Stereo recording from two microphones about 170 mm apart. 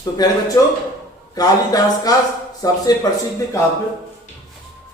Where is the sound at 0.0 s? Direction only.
20° left (ahead or behind).